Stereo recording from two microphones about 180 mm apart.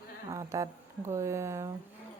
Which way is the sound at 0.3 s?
20° right (ahead or behind).